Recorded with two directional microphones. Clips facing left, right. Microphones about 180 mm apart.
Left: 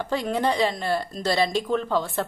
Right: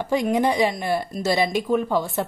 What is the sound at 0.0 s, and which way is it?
Speech, 15° right (ahead or behind).